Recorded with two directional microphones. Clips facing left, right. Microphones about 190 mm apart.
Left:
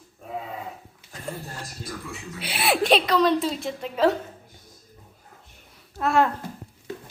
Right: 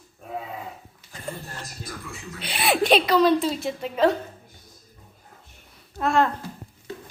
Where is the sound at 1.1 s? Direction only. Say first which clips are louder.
Even; centre (ahead or behind).